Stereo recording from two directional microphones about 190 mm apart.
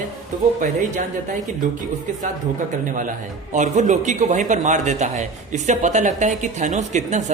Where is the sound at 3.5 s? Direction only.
40° right (ahead or behind).